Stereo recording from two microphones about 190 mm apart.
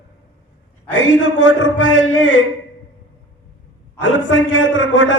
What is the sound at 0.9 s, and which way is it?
A man's voice, 80° left.